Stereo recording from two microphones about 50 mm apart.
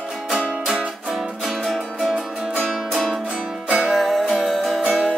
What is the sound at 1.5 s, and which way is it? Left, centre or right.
Music, centre.